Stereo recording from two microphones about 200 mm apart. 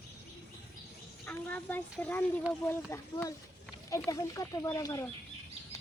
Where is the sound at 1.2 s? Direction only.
10° left (ahead or behind).